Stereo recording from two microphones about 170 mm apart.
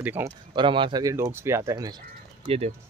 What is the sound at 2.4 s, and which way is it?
Speech, 35° right (ahead or behind).